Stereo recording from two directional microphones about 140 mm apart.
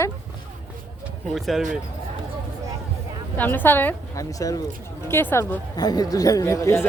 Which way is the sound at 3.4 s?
15° left (ahead or behind).